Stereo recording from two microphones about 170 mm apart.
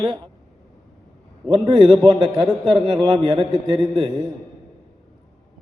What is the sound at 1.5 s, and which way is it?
A man's voice, 25° right (ahead or behind).